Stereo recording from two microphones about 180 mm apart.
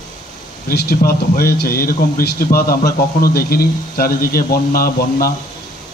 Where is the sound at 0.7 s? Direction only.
60° left (ahead or behind).